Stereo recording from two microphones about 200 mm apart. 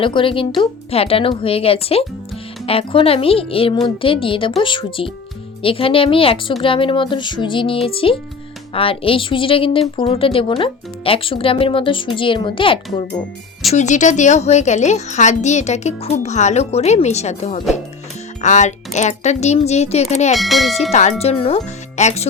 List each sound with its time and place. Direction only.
0.0 s a woman's voice: 25° left (ahead or behind)
13.7 s a child's voice: 35° left (ahead or behind)
20.3 s speech: centre (ahead or behind)
20.9 s a child's voice: 35° left (ahead or behind)